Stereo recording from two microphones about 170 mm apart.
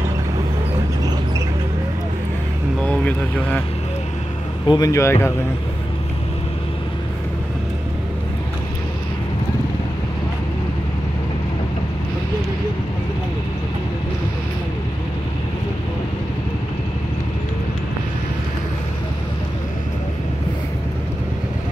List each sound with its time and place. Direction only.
2.8 s speech: 10° left (ahead or behind)
4.6 s speech: 20° left (ahead or behind)